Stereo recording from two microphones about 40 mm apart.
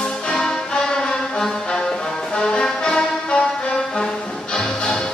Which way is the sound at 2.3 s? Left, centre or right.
Left.